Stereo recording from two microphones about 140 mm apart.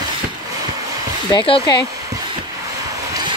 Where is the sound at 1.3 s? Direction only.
35° left (ahead or behind).